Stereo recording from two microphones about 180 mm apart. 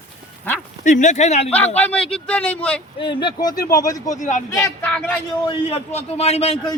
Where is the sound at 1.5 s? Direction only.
10° left (ahead or behind).